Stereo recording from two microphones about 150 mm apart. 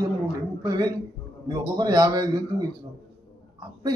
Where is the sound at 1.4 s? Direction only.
25° right (ahead or behind).